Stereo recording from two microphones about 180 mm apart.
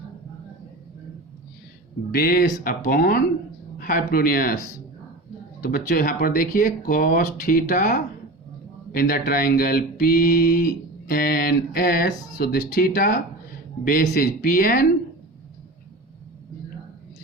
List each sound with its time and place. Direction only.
2.1 s speech: 55° left (ahead or behind)